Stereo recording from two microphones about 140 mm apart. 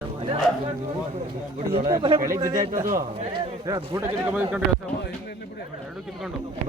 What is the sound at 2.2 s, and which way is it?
Speech, 20° right (ahead or behind).